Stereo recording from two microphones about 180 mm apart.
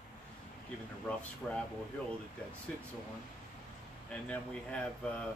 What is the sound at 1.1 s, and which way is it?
Speech, 5° left (ahead or behind).